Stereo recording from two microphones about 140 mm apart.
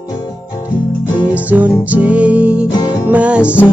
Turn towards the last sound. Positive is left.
turn(degrees=-10)  # may be behind; listen again after turning